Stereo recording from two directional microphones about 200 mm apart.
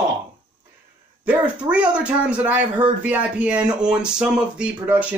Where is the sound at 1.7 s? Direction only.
5° right (ahead or behind).